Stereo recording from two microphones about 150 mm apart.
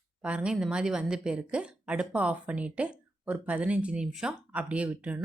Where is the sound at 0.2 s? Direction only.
5° right (ahead or behind).